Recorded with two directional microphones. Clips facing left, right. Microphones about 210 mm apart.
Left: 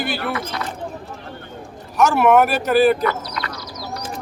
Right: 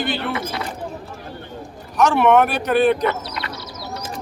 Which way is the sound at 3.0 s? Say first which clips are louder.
Even; 25° right (ahead or behind).